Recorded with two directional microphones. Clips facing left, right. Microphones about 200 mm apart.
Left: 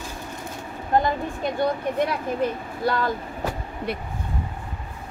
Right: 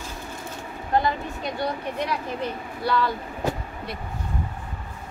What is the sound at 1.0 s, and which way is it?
Speech, 50° left (ahead or behind).